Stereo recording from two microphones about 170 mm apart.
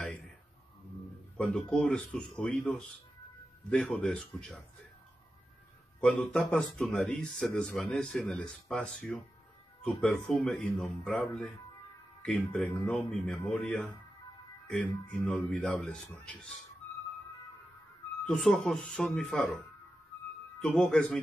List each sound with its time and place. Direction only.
1.3 s speech: 5° left (ahead or behind)
5.9 s speech: 5° left (ahead or behind)
18.2 s speech: 5° left (ahead or behind)
20.6 s speech: 5° left (ahead or behind)